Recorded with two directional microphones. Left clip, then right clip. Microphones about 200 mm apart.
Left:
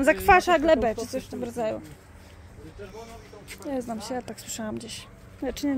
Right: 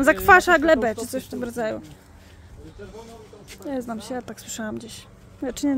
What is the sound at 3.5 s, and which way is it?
Speech, 5° right (ahead or behind).